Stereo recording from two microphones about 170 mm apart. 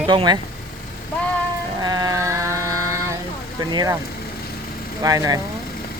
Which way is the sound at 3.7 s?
25° right (ahead or behind).